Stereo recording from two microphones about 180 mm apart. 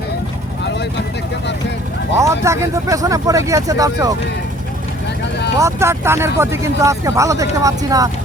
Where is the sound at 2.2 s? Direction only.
15° right (ahead or behind).